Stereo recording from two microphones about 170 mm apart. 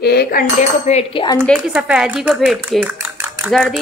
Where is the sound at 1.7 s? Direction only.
5° right (ahead or behind).